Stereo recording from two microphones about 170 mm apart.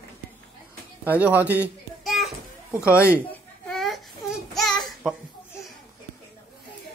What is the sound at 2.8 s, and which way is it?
Speech, 15° left (ahead or behind).